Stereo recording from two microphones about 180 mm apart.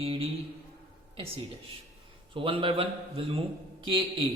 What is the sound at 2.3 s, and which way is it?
Speech, 30° right (ahead or behind).